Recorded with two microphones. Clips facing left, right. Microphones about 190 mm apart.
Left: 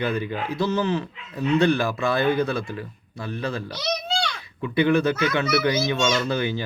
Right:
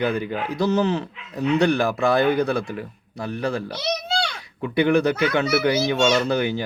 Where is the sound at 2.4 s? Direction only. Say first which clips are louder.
Right 2 dB; 60° right (ahead or behind).